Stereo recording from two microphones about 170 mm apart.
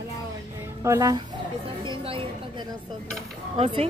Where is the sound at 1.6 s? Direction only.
30° right (ahead or behind).